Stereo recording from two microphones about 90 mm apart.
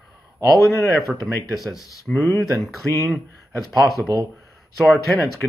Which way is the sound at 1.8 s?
40° left (ahead or behind).